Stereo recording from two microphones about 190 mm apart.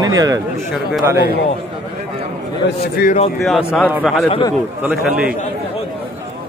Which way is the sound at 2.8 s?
55° left (ahead or behind).